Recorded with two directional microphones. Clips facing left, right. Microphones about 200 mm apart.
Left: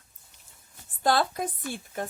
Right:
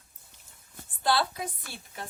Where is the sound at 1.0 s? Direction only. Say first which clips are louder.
Left 3 dB; 45° left (ahead or behind).